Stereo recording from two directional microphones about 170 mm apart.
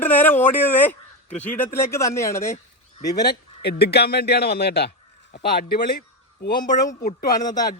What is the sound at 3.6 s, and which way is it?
A man's voice, 70° left (ahead or behind).